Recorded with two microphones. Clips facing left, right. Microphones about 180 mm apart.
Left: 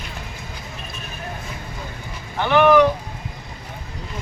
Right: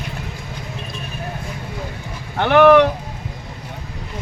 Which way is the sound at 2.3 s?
60° right (ahead or behind).